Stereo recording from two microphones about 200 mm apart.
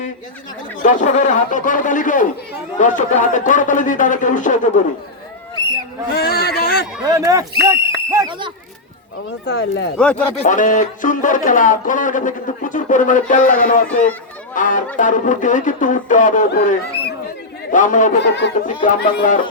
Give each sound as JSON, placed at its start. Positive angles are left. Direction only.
{"t": 0.8, "sound": "speech", "side_deg": 35}
{"t": 6.1, "sound": "a sound", "side_deg": 50}
{"t": 7.0, "sound": "speech", "side_deg": -15}
{"t": 9.5, "sound": "speech", "side_deg": 60}
{"t": 10.0, "sound": "speech", "side_deg": 5}
{"t": 10.3, "sound": "speech", "side_deg": 40}
{"t": 18.2, "sound": "speech", "side_deg": 60}
{"t": 18.8, "sound": "speech", "side_deg": 40}